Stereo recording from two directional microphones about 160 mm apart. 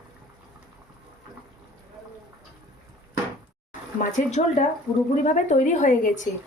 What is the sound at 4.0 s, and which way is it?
A woman's voice, 50° left (ahead or behind).